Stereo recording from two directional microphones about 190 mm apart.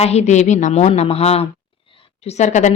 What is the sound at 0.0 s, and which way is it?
A woman's voice, 35° left (ahead or behind).